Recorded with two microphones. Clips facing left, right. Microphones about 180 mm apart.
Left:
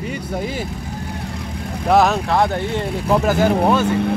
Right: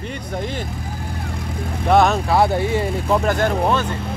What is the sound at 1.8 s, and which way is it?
Speech, centre (ahead or behind).